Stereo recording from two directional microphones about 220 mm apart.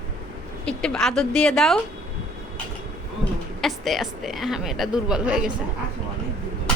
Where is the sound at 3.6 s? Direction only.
Centre (ahead or behind).